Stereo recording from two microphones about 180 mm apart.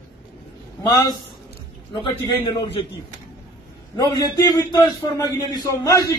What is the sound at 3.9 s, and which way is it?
A man's voice, 20° left (ahead or behind).